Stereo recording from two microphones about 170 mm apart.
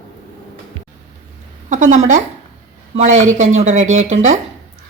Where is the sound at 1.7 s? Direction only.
45° right (ahead or behind).